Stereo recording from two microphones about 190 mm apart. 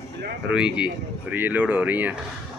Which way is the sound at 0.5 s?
5° right (ahead or behind).